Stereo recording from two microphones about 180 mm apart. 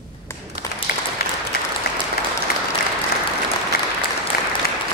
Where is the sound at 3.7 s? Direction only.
55° left (ahead or behind).